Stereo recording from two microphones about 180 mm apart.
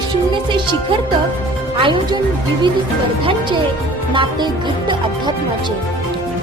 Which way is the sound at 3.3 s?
25° right (ahead or behind).